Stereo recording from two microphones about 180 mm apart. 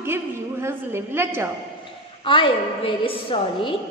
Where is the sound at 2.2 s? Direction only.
30° left (ahead or behind).